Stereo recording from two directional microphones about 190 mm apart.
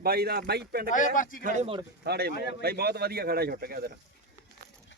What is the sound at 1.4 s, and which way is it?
Speech, 45° right (ahead or behind).